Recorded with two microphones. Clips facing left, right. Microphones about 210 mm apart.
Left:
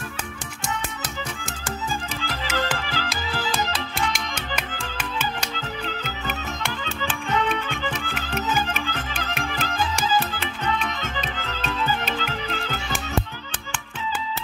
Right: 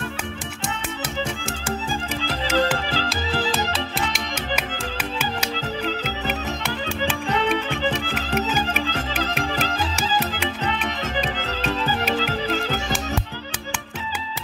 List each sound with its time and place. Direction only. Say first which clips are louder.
2.4 s music: right 6 dB; 30° right (ahead or behind)
4.6 s music: right 3 dB; 10° right (ahead or behind)
6.8 s music: right 5 dB; 35° right (ahead or behind)